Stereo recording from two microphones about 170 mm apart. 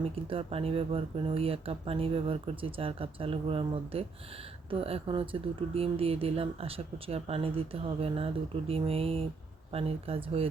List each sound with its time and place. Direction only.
0.0 s speech: 35° right (ahead or behind)